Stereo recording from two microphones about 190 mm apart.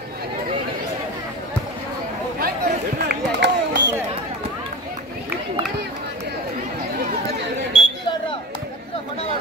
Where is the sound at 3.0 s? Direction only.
70° right (ahead or behind).